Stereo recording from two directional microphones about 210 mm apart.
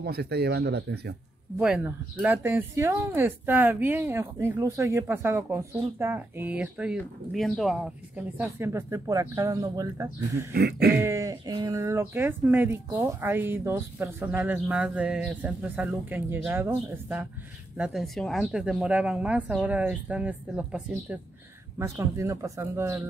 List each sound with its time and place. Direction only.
0.0 s speech: 50° right (ahead or behind)
1.6 s speech: 5° right (ahead or behind)
10.5 s speech: 45° right (ahead or behind)
11.0 s speech: 15° right (ahead or behind)